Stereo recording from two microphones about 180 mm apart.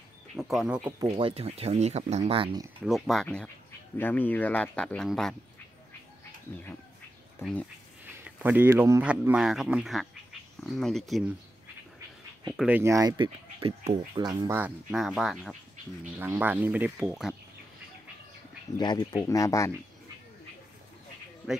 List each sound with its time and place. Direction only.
0.4 s speech: centre (ahead or behind)
1.0 s speech: 35° right (ahead or behind)
2.9 s speech: centre (ahead or behind)
7.4 s speech: 15° left (ahead or behind)
8.2 s speech: 10° right (ahead or behind)
12.5 s speech: 10° right (ahead or behind)
14.6 s speech: 5° right (ahead or behind)
18.8 s speech: 25° left (ahead or behind)
21.4 s speech: 5° right (ahead or behind)